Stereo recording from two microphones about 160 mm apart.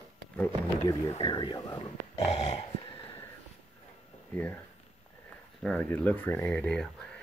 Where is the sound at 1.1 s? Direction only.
30° left (ahead or behind).